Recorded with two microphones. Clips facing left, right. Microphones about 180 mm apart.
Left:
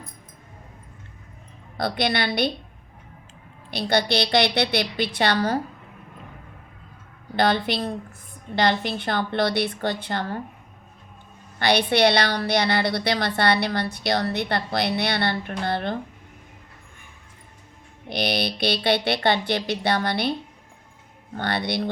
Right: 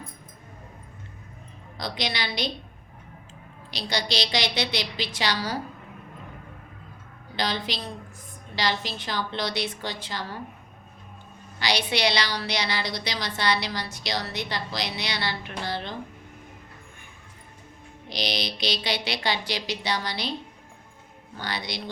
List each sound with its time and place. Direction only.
1.8 s a woman's voice: 55° left (ahead or behind)
3.7 s a woman's voice: 55° left (ahead or behind)
7.3 s a woman's voice: 55° left (ahead or behind)
11.6 s a woman's voice: 55° left (ahead or behind)
18.1 s a woman's voice: 55° left (ahead or behind)
21.3 s a woman's voice: 60° left (ahead or behind)